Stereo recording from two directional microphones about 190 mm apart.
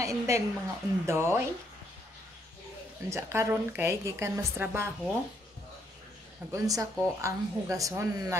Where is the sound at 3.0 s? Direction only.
15° right (ahead or behind).